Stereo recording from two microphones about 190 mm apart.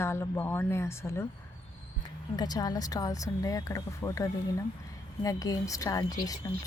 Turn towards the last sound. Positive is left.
turn(degrees=20)  # may be behind; listen again after turning